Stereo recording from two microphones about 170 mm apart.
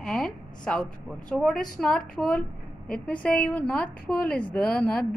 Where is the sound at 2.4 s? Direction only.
55° left (ahead or behind).